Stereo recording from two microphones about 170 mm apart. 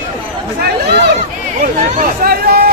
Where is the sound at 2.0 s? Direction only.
65° right (ahead or behind).